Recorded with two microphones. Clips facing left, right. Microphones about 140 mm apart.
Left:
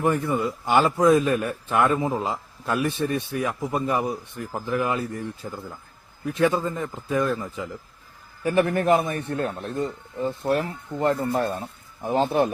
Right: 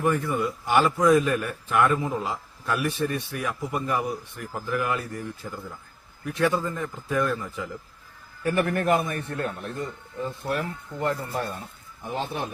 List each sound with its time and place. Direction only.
0.0 s a man's voice: 25° left (ahead or behind); by 12.5 s 40° left (ahead or behind)